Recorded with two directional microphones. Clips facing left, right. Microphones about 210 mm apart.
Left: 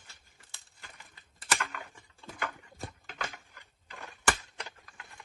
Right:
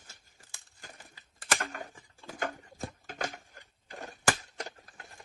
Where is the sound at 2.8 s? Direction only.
45° right (ahead or behind).